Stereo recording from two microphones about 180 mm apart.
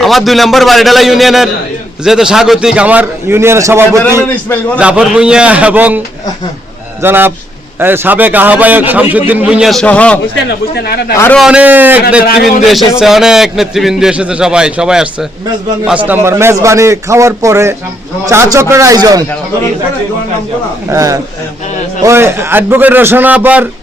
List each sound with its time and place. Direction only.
0.0 s a man's voice: centre (ahead or behind)
4.4 s a man's voice: 10° left (ahead or behind)
4.8 s a man's voice: 5° right (ahead or behind)
7.0 s a man's voice: 10° right (ahead or behind); by 10.2 s 5° left (ahead or behind)
11.3 s a man's voice: 5° right (ahead or behind)
12.2 s a man's voice: 60° left (ahead or behind)
12.6 s a man's voice: centre (ahead or behind); by 19.2 s 20° right (ahead or behind)
20.9 s a man's voice: 15° right (ahead or behind)